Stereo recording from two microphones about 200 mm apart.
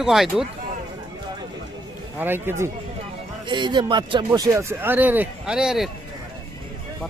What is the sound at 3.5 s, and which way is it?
Speech, 20° right (ahead or behind).